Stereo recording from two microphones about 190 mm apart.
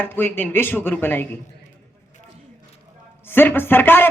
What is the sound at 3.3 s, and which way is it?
Speech, 10° left (ahead or behind).